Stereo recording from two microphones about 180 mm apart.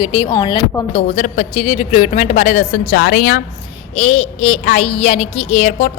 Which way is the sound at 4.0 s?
40° left (ahead or behind).